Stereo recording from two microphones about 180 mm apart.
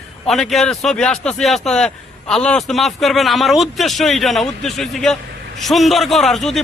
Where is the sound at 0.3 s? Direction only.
Centre (ahead or behind).